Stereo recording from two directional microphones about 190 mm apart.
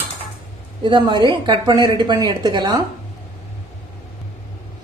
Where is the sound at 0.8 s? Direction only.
25° right (ahead or behind).